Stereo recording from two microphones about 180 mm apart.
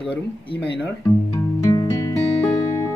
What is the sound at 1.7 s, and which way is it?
Music, 15° left (ahead or behind).